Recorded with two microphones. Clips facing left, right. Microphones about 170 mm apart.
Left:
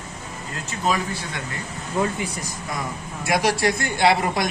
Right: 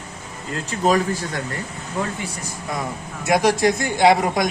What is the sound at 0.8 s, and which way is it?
Speech, 40° right (ahead or behind).